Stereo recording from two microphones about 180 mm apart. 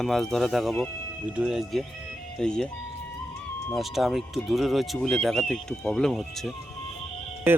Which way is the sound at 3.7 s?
Centre (ahead or behind).